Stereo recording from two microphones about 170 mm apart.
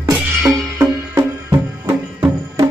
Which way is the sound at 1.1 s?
15° right (ahead or behind).